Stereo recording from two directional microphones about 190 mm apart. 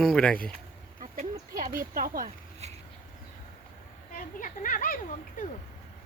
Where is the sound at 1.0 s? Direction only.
45° right (ahead or behind).